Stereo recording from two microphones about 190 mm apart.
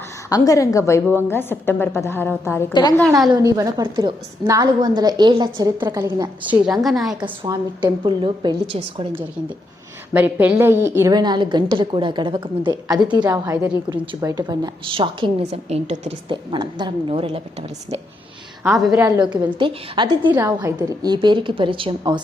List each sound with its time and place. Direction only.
0.3 s a woman's voice: 20° left (ahead or behind)
3.3 s a woman's voice: 20° right (ahead or behind)
6.7 s a woman's voice: centre (ahead or behind)
7.2 s a woman's voice: 20° right (ahead or behind)
10.1 s a woman's voice: 10° right (ahead or behind)
13.4 s a woman's voice: 10° right (ahead or behind)
13.9 s a woman's voice: 25° right (ahead or behind)
18.9 s a woman's voice: 10° right (ahead or behind)
19.5 s a woman's voice: 25° right (ahead or behind)
20.2 s a woman's voice: 10° right (ahead or behind)